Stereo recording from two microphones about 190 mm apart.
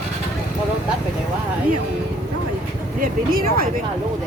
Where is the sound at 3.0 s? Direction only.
50° right (ahead or behind).